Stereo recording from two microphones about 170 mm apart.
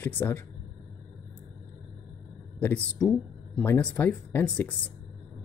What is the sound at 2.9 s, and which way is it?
Speech, centre (ahead or behind).